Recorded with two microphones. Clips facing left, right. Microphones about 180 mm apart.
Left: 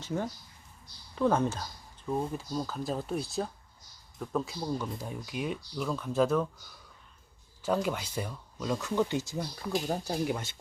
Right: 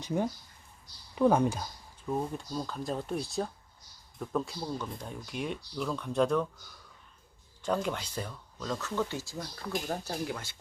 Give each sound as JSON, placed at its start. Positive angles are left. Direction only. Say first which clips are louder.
{"t": 0.0, "sound": "speech", "louder": "right 2 dB", "side_deg": -15}
{"t": 2.0, "sound": "speech", "louder": "left 1 dB", "side_deg": -5}
{"t": 7.6, "sound": "speech", "louder": "left 2 dB", "side_deg": 5}